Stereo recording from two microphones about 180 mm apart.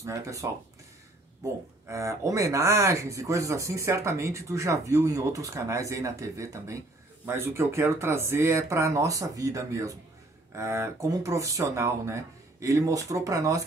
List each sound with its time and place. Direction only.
0.0 s speech: 15° right (ahead or behind)